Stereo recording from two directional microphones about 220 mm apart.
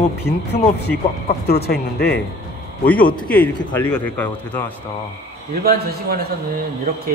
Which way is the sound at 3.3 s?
10° left (ahead or behind).